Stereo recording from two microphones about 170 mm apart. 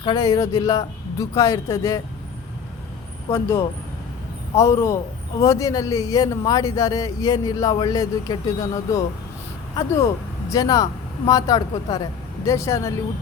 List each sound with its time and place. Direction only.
0.0 s a man's voice: 25° left (ahead or behind)
3.3 s a man's voice: 15° left (ahead or behind)
10.5 s a man's voice: 20° left (ahead or behind)